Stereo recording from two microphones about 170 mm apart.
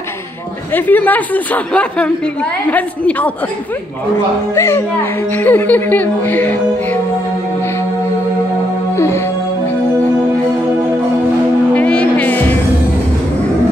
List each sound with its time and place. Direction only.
0.7 s music: 10° left (ahead or behind)
4.6 s music: 15° left (ahead or behind)
8.9 s music: 15° left (ahead or behind)
11.7 s a sound: 5° left (ahead or behind)